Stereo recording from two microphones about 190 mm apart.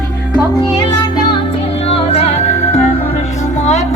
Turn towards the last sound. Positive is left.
turn(degrees=35)  # may be behind; listen again after turning